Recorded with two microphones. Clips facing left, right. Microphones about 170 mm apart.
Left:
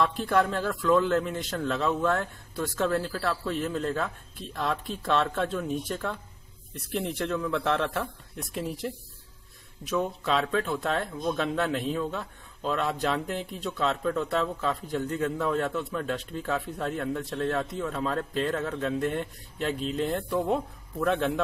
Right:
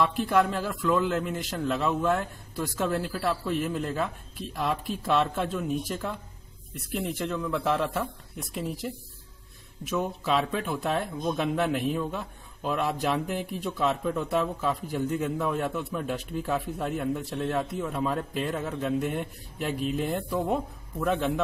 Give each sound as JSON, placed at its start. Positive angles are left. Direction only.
{"t": 0.0, "sound": "speech", "side_deg": -5}